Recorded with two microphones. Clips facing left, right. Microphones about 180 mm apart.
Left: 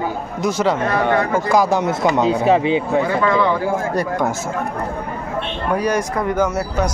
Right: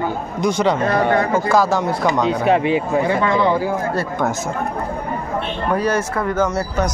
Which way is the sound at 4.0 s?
10° left (ahead or behind).